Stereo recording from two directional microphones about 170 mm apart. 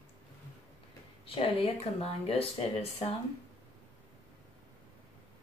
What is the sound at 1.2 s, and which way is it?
Speech, 35° left (ahead or behind).